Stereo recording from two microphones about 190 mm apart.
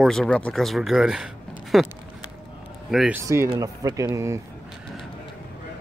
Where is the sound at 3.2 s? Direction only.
15° right (ahead or behind).